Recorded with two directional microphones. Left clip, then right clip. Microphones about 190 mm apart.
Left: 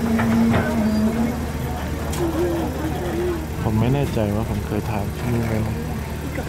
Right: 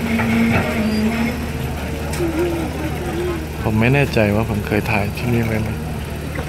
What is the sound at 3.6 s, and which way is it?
Speech, centre (ahead or behind).